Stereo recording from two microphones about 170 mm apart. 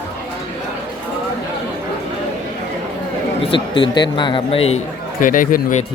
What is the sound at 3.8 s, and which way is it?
Speech, 25° left (ahead or behind).